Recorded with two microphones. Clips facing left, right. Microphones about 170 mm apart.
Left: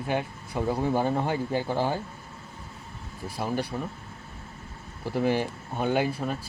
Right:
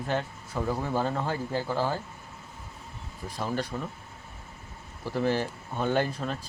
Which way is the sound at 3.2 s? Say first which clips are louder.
Left 2 dB; 10° left (ahead or behind).